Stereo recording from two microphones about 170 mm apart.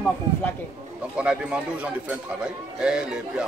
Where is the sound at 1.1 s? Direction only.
5° right (ahead or behind).